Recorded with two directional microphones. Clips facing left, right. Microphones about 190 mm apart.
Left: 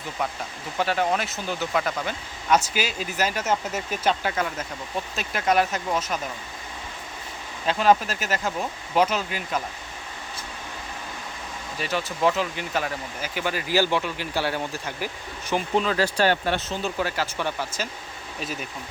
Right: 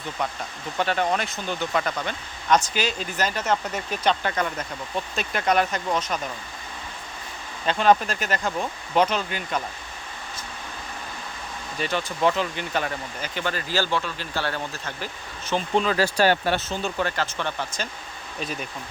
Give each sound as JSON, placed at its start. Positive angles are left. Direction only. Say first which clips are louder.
{"t": 0.8, "sound": "speech", "louder": "even", "side_deg": 5}
{"t": 7.7, "sound": "speech", "louder": "right 1 dB", "side_deg": 5}
{"t": 11.8, "sound": "speech", "louder": "right 1 dB", "side_deg": 5}
{"t": 16.2, "sound": "speech", "louder": "right 2 dB", "side_deg": -40}
{"t": 16.6, "sound": "speech", "louder": "even", "side_deg": 0}